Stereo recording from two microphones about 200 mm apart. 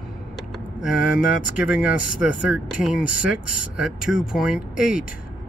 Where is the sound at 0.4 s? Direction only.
Centre (ahead or behind).